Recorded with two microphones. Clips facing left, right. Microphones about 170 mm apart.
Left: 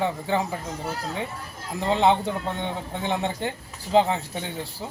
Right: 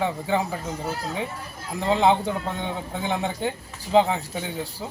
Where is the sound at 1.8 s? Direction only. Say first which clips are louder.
Right 1 dB; centre (ahead or behind).